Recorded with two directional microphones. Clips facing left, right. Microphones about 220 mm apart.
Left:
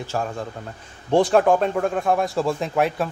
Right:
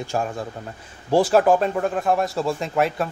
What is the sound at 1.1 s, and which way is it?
Speech, 5° right (ahead or behind).